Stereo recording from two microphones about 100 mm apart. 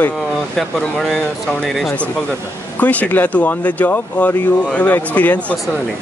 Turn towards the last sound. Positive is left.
turn(degrees=15)  # may be behind; listen again after turning